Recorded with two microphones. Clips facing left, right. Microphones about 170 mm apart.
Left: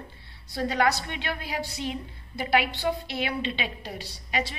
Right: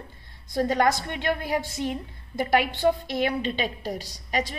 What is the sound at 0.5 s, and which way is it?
A woman's voice, 45° right (ahead or behind).